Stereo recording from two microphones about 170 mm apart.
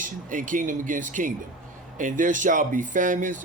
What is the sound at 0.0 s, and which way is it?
Speech, 50° right (ahead or behind).